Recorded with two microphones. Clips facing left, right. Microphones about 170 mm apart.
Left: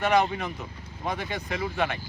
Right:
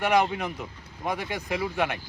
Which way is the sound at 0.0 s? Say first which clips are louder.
Even; 10° right (ahead or behind).